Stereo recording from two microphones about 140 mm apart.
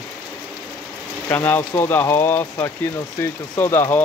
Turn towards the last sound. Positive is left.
turn(degrees=15)  # may be behind; listen again after turning